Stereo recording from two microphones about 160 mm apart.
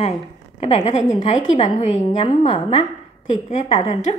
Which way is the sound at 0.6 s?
40° left (ahead or behind).